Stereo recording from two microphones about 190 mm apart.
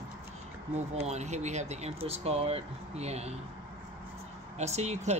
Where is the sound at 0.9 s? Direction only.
35° right (ahead or behind).